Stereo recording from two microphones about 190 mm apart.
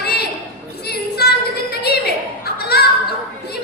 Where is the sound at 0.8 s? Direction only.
55° left (ahead or behind).